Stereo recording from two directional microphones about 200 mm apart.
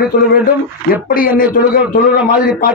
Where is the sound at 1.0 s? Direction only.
45° left (ahead or behind).